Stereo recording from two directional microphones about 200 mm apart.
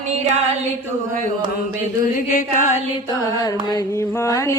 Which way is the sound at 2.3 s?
40° left (ahead or behind).